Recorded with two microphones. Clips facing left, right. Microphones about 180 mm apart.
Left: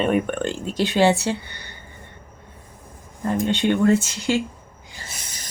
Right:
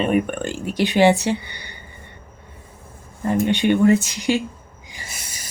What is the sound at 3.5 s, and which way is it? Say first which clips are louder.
Speech: right 2 dB; 15° right (ahead or behind).